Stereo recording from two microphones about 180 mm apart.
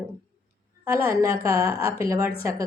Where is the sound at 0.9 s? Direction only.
20° right (ahead or behind).